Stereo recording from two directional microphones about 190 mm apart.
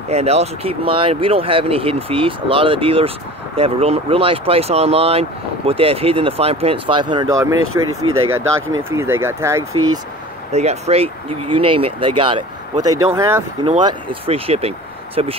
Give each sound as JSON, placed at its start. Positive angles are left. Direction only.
{"t": 0.1, "sound": "speech", "side_deg": -35}
{"t": 7.5, "sound": "speech", "side_deg": -90}
{"t": 8.9, "sound": "speech", "side_deg": -15}
{"t": 10.5, "sound": "speech", "side_deg": -35}
{"t": 12.8, "sound": "speech", "side_deg": -15}
{"t": 13.8, "sound": "speech", "side_deg": -30}